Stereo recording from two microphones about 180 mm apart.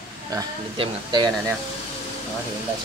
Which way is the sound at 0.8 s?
25° right (ahead or behind).